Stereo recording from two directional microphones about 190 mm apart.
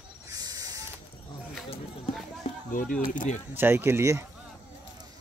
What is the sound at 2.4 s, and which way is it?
Speech, 45° left (ahead or behind).